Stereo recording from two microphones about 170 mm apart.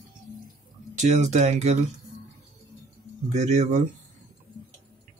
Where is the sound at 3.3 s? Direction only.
40° right (ahead or behind).